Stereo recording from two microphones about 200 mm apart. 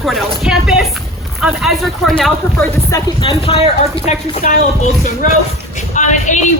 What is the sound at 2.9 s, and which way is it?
A woman's voice, 25° left (ahead or behind).